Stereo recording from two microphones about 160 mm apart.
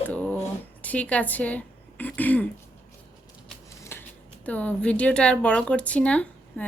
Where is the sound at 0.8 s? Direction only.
10° left (ahead or behind).